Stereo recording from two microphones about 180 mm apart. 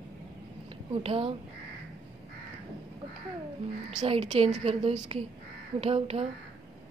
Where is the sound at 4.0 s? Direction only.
40° right (ahead or behind).